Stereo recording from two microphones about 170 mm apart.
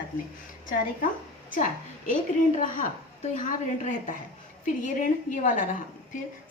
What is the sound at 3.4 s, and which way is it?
A woman's voice, 50° left (ahead or behind).